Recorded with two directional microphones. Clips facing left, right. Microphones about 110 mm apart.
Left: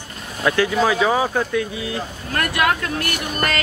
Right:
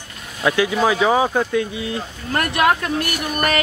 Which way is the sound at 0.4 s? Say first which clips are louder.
Even; 15° right (ahead or behind).